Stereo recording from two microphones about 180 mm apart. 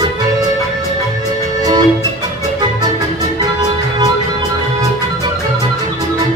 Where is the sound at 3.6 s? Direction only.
20° right (ahead or behind).